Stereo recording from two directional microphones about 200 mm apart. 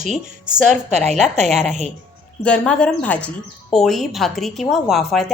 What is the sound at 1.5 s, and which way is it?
A woman's voice, centre (ahead or behind).